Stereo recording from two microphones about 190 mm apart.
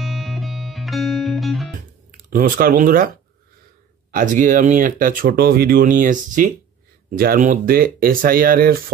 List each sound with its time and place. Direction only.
0.0 s music: centre (ahead or behind)
2.0 s speech: 45° right (ahead or behind)
4.1 s speech: 45° right (ahead or behind)